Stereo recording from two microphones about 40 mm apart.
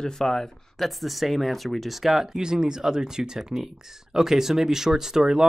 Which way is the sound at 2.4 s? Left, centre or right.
Centre.